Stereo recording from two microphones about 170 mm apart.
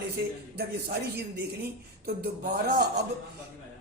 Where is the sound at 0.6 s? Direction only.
65° right (ahead or behind).